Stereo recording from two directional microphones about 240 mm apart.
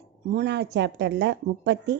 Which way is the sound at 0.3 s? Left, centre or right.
Right.